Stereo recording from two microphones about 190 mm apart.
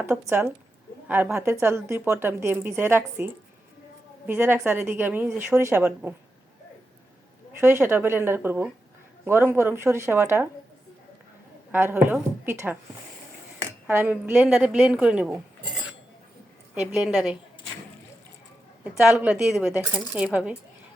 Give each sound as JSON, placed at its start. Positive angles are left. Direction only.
{"t": 0.0, "sound": "a woman's voice", "side_deg": -10}
{"t": 7.6, "sound": "a woman's voice", "side_deg": -10}
{"t": 11.7, "sound": "a woman's voice", "side_deg": -10}
{"t": 13.8, "sound": "a woman's voice", "side_deg": -10}
{"t": 16.8, "sound": "speech", "side_deg": -5}
{"t": 18.9, "sound": "speech", "side_deg": -5}